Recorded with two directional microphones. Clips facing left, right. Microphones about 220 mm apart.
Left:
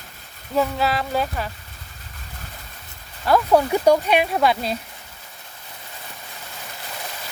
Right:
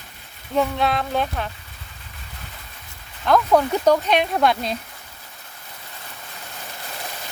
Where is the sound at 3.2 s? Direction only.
10° left (ahead or behind).